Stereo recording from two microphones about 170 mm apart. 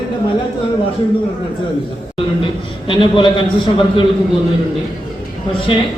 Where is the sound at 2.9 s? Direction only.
30° left (ahead or behind).